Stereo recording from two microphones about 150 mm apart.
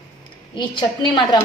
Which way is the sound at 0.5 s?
30° left (ahead or behind).